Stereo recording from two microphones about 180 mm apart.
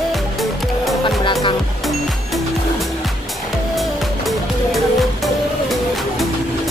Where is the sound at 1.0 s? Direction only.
25° left (ahead or behind).